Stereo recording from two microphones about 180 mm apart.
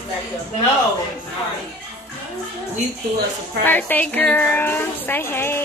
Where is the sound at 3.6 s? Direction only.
10° left (ahead or behind).